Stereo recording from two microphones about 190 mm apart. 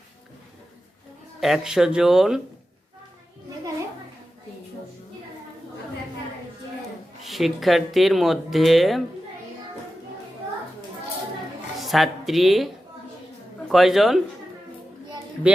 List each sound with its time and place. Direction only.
1.4 s speech: centre (ahead or behind)
7.3 s speech: centre (ahead or behind)
11.8 s speech: centre (ahead or behind)
15.4 s a man's voice: 5° right (ahead or behind)